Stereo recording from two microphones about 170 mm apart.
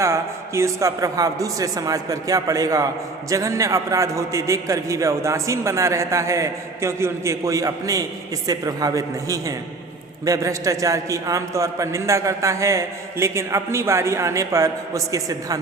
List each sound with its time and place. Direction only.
0.0 s a woman's voice: 15° right (ahead or behind)